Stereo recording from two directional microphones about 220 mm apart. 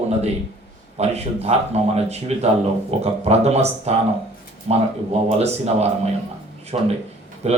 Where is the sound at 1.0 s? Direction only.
30° right (ahead or behind).